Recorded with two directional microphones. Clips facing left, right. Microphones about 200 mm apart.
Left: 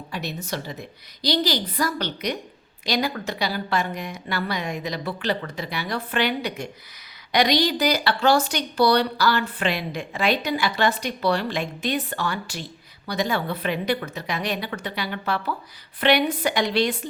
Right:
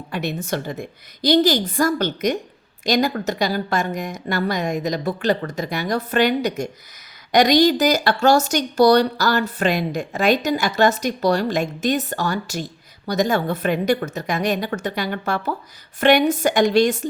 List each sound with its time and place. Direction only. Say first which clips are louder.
0.1 s a woman's voice: right 6 dB; 55° right (ahead or behind)